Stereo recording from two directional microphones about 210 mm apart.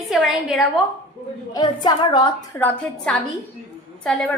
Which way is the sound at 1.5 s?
20° left (ahead or behind).